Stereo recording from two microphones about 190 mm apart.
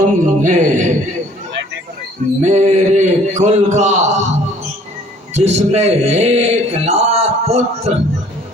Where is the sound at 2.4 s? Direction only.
40° right (ahead or behind).